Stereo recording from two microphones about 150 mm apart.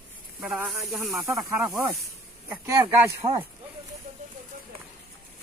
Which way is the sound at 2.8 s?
30° right (ahead or behind).